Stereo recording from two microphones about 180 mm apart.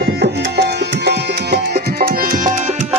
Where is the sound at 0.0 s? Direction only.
70° right (ahead or behind).